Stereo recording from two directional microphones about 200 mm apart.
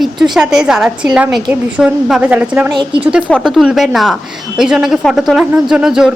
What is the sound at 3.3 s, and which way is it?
A woman's voice, centre (ahead or behind).